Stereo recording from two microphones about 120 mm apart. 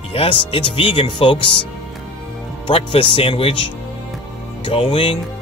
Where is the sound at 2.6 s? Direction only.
45° left (ahead or behind).